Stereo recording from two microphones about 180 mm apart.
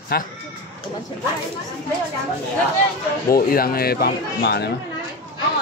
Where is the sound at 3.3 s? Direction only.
55° left (ahead or behind).